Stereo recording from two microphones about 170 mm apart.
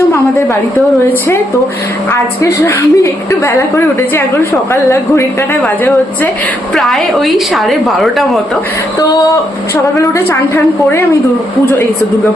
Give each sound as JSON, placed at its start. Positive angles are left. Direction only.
{"t": 2.4, "sound": "a woman's voice", "side_deg": 15}
{"t": 4.7, "sound": "a woman's voice", "side_deg": 15}
{"t": 6.7, "sound": "a woman's voice", "side_deg": 0}
{"t": 9.0, "sound": "a woman's voice", "side_deg": 20}